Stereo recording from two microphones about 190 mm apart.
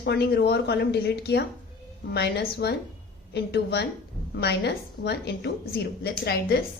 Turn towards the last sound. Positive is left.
turn(degrees=55)  # may be behind; listen again after turning